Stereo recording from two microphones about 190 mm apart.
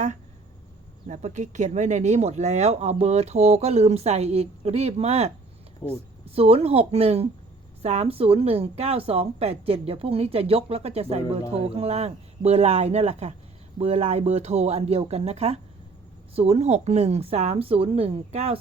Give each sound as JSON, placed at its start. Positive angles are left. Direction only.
{"t": 1.0, "sound": "speech", "side_deg": -40}
{"t": 5.8, "sound": "speech", "side_deg": 15}
{"t": 6.3, "sound": "speech", "side_deg": -30}